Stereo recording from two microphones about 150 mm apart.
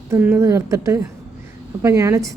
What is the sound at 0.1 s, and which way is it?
A woman's voice, 15° right (ahead or behind).